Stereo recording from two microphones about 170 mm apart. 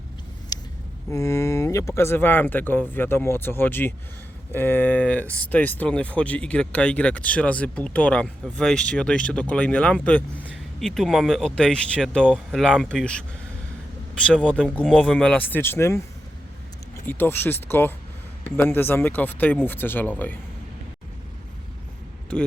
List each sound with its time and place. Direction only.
0.5 s a sound: 25° left (ahead or behind)
1.1 s speech: 20° left (ahead or behind)
14.8 s speech: 5° left (ahead or behind)
17.1 s speech: 10° left (ahead or behind)